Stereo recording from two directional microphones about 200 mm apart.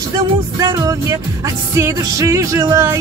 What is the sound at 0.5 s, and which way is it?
Music, 15° right (ahead or behind).